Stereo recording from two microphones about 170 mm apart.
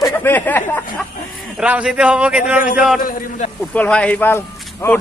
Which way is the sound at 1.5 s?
5° right (ahead or behind).